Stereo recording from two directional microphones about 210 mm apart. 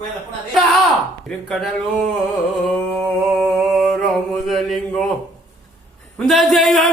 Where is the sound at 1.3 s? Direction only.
5° left (ahead or behind).